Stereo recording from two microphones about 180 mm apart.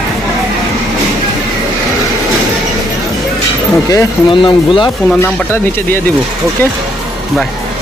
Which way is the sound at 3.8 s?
25° left (ahead or behind).